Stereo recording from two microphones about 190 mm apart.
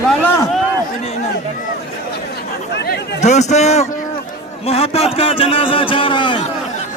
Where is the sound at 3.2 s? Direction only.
35° left (ahead or behind).